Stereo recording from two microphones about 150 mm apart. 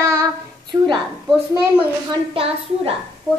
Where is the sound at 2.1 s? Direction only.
35° right (ahead or behind).